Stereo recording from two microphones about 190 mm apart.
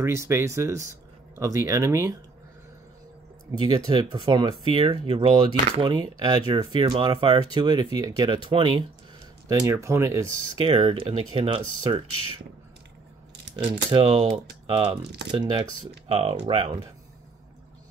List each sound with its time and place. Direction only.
0.0 s speech: 15° right (ahead or behind)
3.5 s speech: 20° right (ahead or behind)
9.5 s speech: 15° right (ahead or behind)
10.6 s speech: 30° right (ahead or behind)
13.8 s speech: 25° right (ahead or behind)